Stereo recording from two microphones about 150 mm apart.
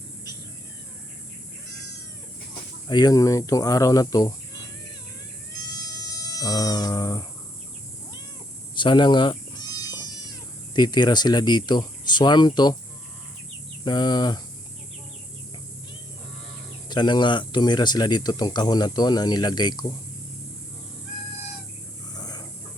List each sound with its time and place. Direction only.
2.9 s speech: 25° left (ahead or behind)
5.7 s a sound: 25° left (ahead or behind)
8.7 s bleat: 30° left (ahead or behind)
10.8 s speech: 30° left (ahead or behind)
13.8 s speech: 30° left (ahead or behind)
16.9 s speech: 30° left (ahead or behind)
22.1 s a sound: 25° left (ahead or behind)